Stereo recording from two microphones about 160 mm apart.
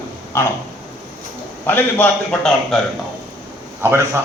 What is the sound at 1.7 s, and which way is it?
A man's voice, 10° left (ahead or behind).